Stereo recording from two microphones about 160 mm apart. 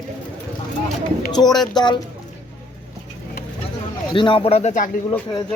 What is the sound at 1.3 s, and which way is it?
Speech, 25° left (ahead or behind).